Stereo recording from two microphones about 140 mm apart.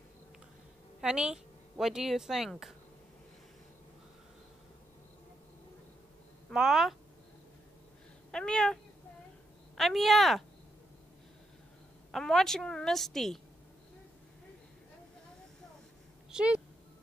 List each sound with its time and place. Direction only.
1.0 s speech: 5° right (ahead or behind)
6.5 s a woman's voice: 5° right (ahead or behind)
8.3 s speech: 5° left (ahead or behind)
9.8 s a woman's voice: centre (ahead or behind)
12.1 s a woman's voice: 5° left (ahead or behind)
16.3 s a woman's voice: 5° right (ahead or behind)